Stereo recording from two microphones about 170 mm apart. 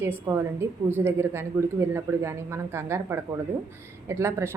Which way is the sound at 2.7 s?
15° right (ahead or behind).